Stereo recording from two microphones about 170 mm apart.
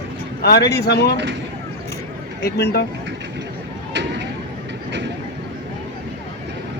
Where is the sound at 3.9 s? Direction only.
90° right.